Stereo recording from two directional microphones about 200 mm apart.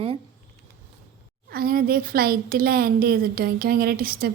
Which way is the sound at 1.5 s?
50° right (ahead or behind).